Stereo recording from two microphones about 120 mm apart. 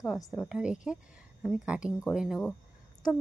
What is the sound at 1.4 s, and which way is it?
Speech, 5° left (ahead or behind).